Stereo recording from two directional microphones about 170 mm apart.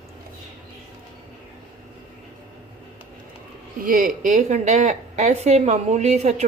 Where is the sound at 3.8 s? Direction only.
55° right (ahead or behind).